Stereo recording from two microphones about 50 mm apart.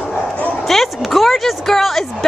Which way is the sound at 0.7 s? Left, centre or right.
Centre.